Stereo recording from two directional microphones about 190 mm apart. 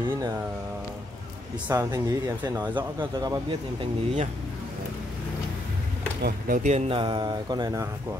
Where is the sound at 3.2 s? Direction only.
20° right (ahead or behind).